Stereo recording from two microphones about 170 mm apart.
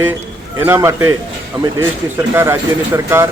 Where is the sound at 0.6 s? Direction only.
15° right (ahead or behind).